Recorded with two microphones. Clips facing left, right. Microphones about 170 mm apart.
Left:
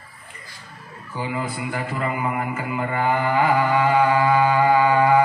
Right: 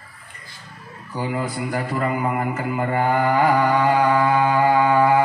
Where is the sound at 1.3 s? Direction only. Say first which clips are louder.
Right 3 dB; 45° right (ahead or behind).